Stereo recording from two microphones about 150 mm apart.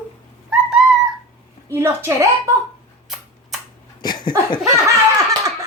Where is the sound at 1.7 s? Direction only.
20° right (ahead or behind).